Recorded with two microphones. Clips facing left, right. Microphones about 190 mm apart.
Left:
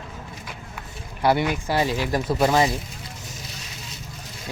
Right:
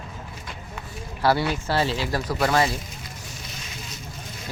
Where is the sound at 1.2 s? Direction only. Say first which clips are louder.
Left 1 dB; 20° left (ahead or behind).